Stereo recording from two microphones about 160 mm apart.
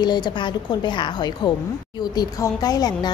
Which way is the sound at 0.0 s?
25° left (ahead or behind).